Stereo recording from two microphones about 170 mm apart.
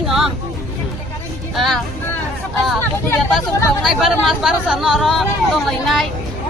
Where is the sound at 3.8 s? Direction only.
Centre (ahead or behind).